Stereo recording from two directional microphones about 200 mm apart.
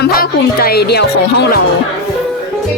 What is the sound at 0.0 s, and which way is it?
Speech, 50° left (ahead or behind).